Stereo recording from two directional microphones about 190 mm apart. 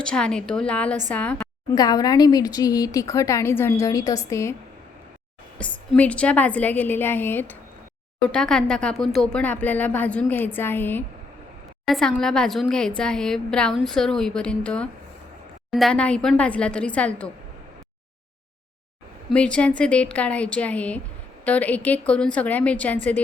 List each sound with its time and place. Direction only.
0.0 s a woman's voice: 5° left (ahead or behind)
1.7 s speech: 20° left (ahead or behind)
5.5 s a woman's voice: 5° left (ahead or behind)
19.3 s speech: 5° left (ahead or behind)